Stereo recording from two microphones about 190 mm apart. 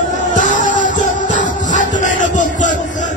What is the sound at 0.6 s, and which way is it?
Music, 40° left (ahead or behind).